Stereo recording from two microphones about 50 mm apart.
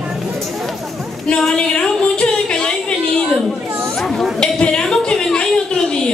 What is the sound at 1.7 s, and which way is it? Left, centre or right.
Music, centre.